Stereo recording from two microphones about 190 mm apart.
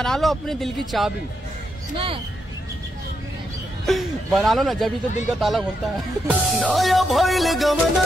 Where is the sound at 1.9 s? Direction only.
30° right (ahead or behind).